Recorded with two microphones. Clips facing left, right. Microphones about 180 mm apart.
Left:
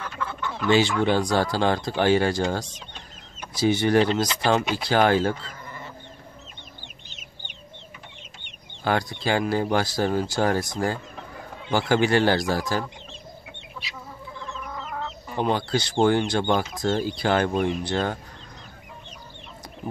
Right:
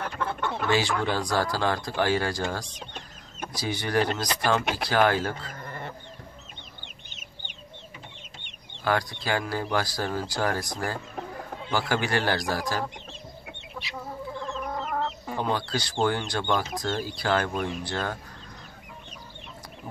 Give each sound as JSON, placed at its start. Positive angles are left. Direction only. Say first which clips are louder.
{"t": 0.0, "sound": "chicken", "louder": "right 2 dB", "side_deg": -55}
{"t": 0.7, "sound": "speech", "louder": "left 6 dB", "side_deg": 25}
{"t": 5.6, "sound": "chicken", "louder": "right 2 dB", "side_deg": -55}
{"t": 8.8, "sound": "speech", "louder": "left 3 dB", "side_deg": 25}
{"t": 14.5, "sound": "chicken", "louder": "right 3 dB", "side_deg": -45}
{"t": 15.4, "sound": "speech", "louder": "left 5 dB", "side_deg": 25}